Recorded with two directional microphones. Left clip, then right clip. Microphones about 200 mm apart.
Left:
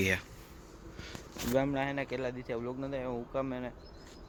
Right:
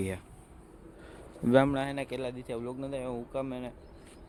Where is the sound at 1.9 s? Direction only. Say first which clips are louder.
Even; 10° right (ahead or behind).